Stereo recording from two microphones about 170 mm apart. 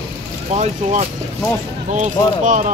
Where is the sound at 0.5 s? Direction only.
40° right (ahead or behind).